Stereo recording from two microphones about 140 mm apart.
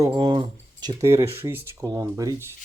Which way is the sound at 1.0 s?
20° right (ahead or behind).